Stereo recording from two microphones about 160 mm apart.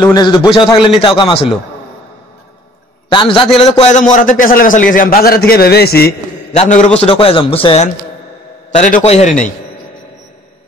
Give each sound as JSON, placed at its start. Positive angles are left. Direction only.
{"t": 0.0, "sound": "a man's voice", "side_deg": 25}
{"t": 3.1, "sound": "speech", "side_deg": 30}
{"t": 3.8, "sound": "a man's voice", "side_deg": 50}
{"t": 6.5, "sound": "a man's voice", "side_deg": 45}
{"t": 8.7, "sound": "a man's voice", "side_deg": 45}